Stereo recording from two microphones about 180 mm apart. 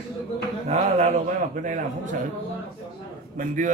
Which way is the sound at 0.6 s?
35° right (ahead or behind).